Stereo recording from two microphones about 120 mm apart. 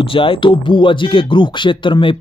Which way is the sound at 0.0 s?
45° left (ahead or behind).